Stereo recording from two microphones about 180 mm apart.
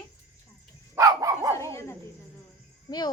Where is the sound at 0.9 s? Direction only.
20° right (ahead or behind).